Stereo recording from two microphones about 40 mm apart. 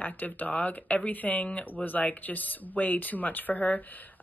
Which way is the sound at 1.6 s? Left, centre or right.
Left.